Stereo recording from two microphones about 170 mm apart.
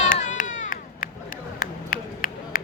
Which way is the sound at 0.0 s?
45° left (ahead or behind).